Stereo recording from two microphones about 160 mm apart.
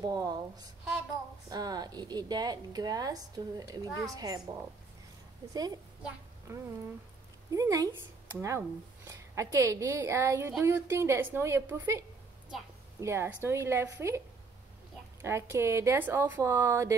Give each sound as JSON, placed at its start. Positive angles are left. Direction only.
{"t": 0.0, "sound": "speech", "side_deg": -25}
{"t": 5.5, "sound": "speech", "side_deg": -25}
{"t": 13.0, "sound": "speech", "side_deg": -15}
{"t": 15.2, "sound": "speech", "side_deg": -15}